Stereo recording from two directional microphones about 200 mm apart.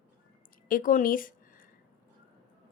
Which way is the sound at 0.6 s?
45° left (ahead or behind).